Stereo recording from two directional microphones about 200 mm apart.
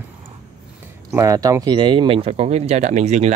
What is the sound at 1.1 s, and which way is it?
Speech, 15° right (ahead or behind).